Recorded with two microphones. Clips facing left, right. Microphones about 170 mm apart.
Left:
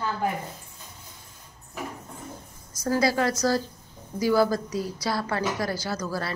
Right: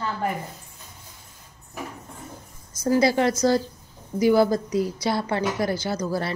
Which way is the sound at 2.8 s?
25° right (ahead or behind).